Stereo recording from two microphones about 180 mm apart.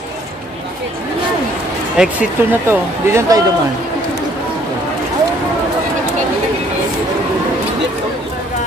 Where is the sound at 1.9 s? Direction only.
5° right (ahead or behind).